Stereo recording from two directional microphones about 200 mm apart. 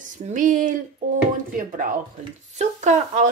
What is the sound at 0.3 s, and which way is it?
Speech, 40° right (ahead or behind).